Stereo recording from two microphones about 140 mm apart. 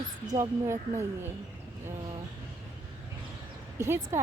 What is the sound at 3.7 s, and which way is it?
Speech, 15° right (ahead or behind).